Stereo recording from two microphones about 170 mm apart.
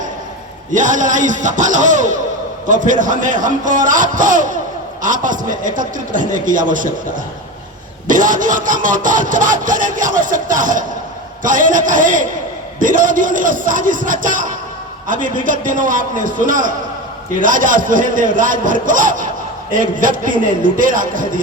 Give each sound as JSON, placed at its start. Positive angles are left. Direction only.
{"t": 0.7, "sound": "speech", "side_deg": -50}
{"t": 8.0, "sound": "speech", "side_deg": -50}